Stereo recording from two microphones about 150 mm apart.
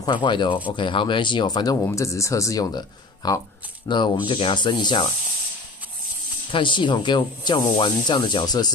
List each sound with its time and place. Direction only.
0.0 s speech: 30° left (ahead or behind)
6.5 s speech: 35° left (ahead or behind)